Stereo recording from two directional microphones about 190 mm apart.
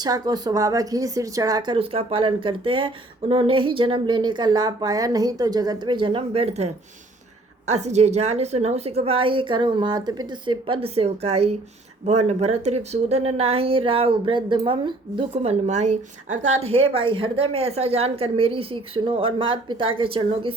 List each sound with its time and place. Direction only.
0.0 s a woman's voice: 20° right (ahead or behind)